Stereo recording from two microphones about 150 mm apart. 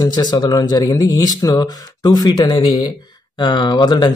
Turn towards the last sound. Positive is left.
turn(degrees=30)  # may be behind; listen again after turning